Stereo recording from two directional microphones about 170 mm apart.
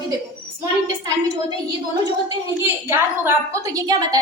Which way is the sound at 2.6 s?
15° right (ahead or behind).